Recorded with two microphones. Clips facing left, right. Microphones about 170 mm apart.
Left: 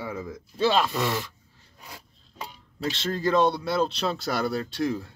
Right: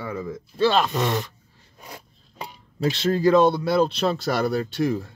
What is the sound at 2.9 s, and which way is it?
Speech, 10° right (ahead or behind).